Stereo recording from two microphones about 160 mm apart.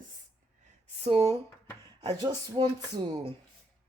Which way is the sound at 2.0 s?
25° right (ahead or behind).